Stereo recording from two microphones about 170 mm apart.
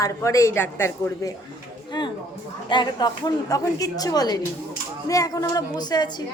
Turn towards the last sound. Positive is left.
turn(degrees=25)  # may be behind; listen again after turning